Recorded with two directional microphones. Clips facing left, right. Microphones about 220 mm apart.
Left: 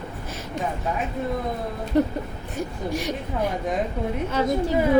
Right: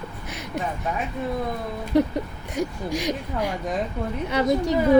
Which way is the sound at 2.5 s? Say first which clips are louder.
Right 2 dB; 15° right (ahead or behind).